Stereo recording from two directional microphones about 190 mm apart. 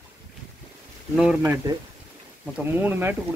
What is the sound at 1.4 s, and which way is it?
Speech, 15° right (ahead or behind).